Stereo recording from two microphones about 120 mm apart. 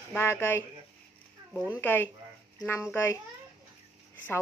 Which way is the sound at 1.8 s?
15° left (ahead or behind).